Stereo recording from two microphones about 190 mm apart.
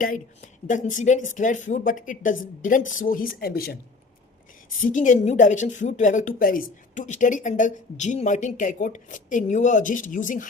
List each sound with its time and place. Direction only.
0.0 s speech: 45° left (ahead or behind)
4.7 s speech: 45° left (ahead or behind)